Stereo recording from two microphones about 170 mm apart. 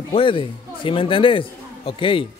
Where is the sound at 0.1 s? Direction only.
30° left (ahead or behind).